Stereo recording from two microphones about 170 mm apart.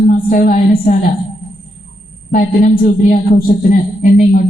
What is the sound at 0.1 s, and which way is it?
Speech, 60° left (ahead or behind).